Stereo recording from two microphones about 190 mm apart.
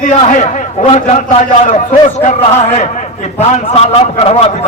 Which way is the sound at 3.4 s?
35° left (ahead or behind).